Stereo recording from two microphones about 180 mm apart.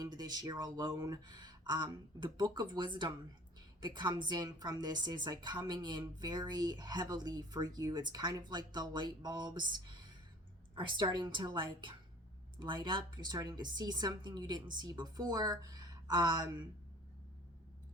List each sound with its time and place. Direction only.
0.0 s a woman's voice: 20° right (ahead or behind)
11.0 s a woman's voice: 25° right (ahead or behind)